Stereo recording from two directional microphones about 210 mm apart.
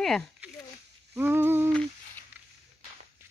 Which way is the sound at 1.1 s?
10° right (ahead or behind).